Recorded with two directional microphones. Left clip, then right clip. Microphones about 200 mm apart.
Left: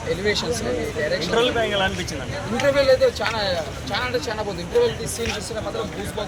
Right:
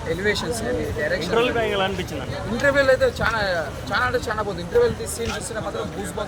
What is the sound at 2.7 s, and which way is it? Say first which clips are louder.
Speech: left 1 dB; 5° right (ahead or behind).